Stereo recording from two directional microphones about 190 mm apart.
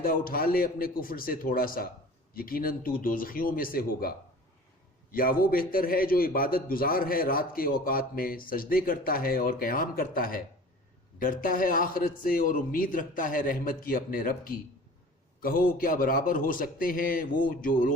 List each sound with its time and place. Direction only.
0.0 s a man's voice: 50° left (ahead or behind)
5.1 s a man's voice: 50° left (ahead or behind)